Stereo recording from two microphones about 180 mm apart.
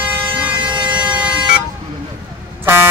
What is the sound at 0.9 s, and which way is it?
Bagpipes, 10° right (ahead or behind).